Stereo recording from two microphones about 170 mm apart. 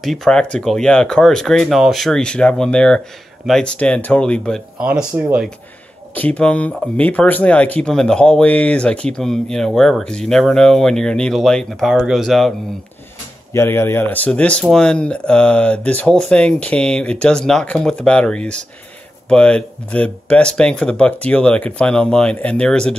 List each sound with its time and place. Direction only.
0.0 s speech: centre (ahead or behind)
4.7 s speech: 10° right (ahead or behind)
6.1 s speech: 10° left (ahead or behind)
13.5 s speech: 15° left (ahead or behind)